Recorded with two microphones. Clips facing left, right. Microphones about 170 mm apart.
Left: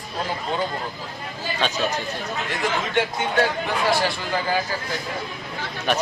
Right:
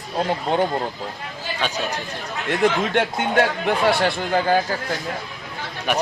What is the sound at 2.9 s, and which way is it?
Speech, 55° right (ahead or behind).